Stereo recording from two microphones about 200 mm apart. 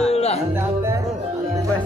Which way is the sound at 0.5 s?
15° right (ahead or behind).